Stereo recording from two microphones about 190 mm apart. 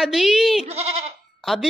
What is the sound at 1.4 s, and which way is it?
Speech, centre (ahead or behind).